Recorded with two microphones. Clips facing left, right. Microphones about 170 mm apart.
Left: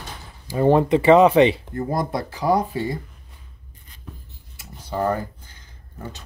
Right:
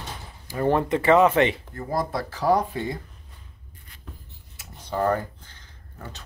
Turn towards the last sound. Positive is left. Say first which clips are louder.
# even
turn(degrees=10)  # may be behind; listen again after turning